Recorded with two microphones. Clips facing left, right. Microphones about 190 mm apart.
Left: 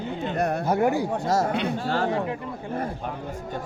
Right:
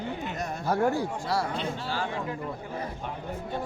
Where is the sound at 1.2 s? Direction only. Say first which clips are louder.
Left 8 dB; 45° left (ahead or behind).